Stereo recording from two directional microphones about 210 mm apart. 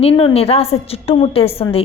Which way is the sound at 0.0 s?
25° left (ahead or behind).